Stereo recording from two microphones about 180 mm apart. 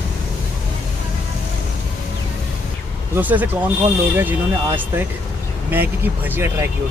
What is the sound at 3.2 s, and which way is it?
Speech, 10° right (ahead or behind).